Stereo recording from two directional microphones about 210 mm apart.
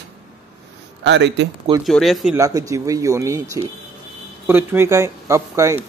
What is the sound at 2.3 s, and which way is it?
Speech, 15° right (ahead or behind).